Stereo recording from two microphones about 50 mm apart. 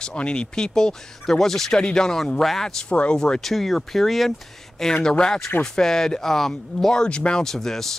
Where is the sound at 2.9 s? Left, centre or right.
Left.